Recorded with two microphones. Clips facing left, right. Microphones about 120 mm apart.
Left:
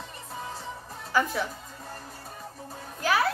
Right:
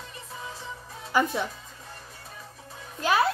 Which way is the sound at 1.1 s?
20° right (ahead or behind).